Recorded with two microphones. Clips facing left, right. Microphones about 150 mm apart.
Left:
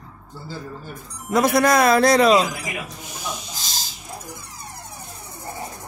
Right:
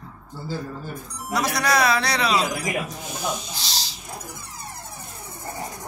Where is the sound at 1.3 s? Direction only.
50° left (ahead or behind).